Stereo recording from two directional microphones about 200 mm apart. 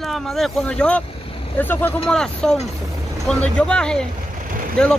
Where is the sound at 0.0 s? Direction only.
Centre (ahead or behind).